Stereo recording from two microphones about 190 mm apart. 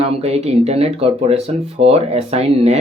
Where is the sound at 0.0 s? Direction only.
35° right (ahead or behind).